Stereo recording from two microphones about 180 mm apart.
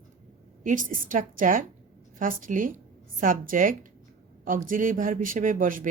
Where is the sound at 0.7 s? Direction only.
45° right (ahead or behind).